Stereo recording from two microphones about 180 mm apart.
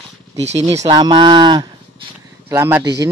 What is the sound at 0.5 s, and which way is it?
A man's voice, 15° right (ahead or behind).